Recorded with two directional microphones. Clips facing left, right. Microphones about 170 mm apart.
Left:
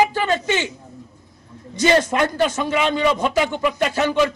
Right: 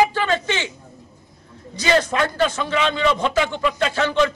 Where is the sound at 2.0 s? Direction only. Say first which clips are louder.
Left 1 dB; 15° left (ahead or behind).